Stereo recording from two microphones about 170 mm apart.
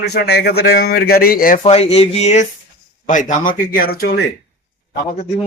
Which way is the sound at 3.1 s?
50° left (ahead or behind).